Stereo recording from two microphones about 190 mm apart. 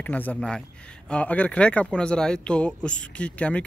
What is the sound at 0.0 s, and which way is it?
A man's voice, 10° left (ahead or behind).